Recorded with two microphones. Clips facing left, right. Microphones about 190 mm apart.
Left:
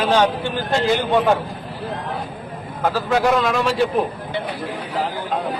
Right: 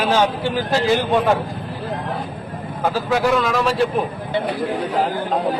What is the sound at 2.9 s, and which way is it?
Speech, 5° right (ahead or behind).